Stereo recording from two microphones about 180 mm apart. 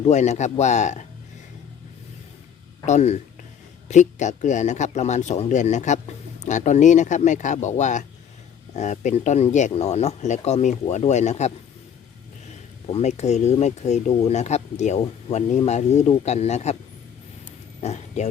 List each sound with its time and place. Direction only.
0.0 s speech: 40° left (ahead or behind)
2.8 s speech: 40° left (ahead or behind)
12.9 s speech: 40° left (ahead or behind)
17.7 s speech: 40° left (ahead or behind)